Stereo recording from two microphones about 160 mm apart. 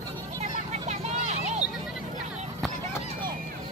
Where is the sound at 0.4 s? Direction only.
45° right (ahead or behind).